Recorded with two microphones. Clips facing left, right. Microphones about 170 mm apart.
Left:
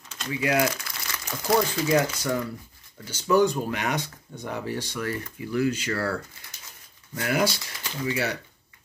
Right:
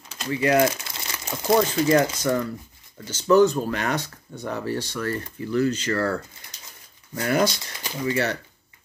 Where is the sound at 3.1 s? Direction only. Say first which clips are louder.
Right 4 dB; 15° left (ahead or behind).